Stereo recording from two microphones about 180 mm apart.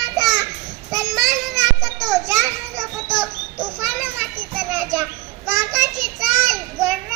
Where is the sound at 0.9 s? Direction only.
20° right (ahead or behind).